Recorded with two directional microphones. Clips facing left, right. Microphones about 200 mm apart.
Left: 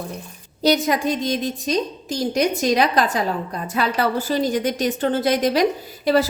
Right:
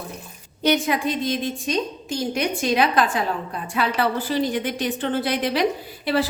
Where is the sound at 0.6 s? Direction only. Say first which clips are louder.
Left 2 dB; 40° left (ahead or behind).